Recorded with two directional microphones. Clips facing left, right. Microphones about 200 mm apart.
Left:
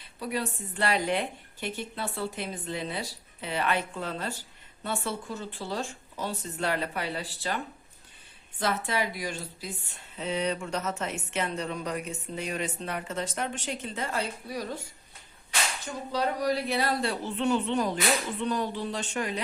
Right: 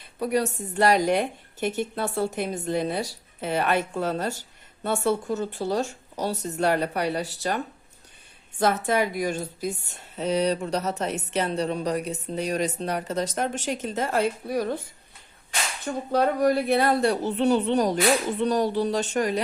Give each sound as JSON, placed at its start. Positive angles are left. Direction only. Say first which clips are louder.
{"t": 0.2, "sound": "a woman's voice", "louder": "right 7 dB", "side_deg": -45}
{"t": 15.8, "sound": "a woman's voice", "louder": "right 9 dB", "side_deg": -55}